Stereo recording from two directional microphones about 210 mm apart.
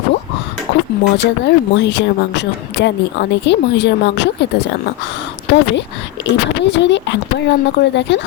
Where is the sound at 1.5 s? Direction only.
55° left (ahead or behind).